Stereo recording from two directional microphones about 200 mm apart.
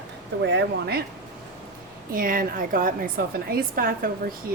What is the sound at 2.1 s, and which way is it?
A woman's voice, 45° right (ahead or behind).